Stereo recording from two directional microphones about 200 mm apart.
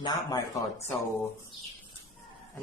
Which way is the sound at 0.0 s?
15° left (ahead or behind).